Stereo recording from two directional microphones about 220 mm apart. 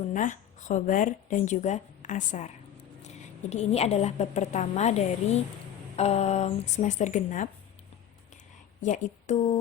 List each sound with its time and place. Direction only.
0.0 s a woman's voice: 35° left (ahead or behind)
8.8 s a woman's voice: 35° left (ahead or behind)